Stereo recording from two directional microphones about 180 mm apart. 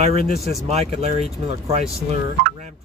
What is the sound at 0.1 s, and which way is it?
Speech, 55° left (ahead or behind).